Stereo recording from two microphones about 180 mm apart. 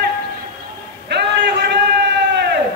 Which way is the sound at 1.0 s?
70° right (ahead or behind).